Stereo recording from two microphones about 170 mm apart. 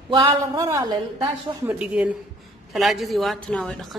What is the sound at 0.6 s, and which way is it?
Speech, 20° right (ahead or behind).